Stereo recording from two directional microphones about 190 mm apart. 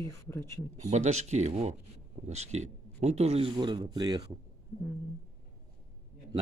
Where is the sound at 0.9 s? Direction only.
35° right (ahead or behind); by 4.2 s 20° right (ahead or behind).